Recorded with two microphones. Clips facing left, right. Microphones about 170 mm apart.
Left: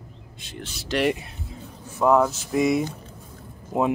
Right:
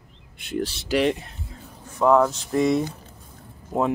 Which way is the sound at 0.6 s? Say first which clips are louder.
Right 11 dB; 35° right (ahead or behind).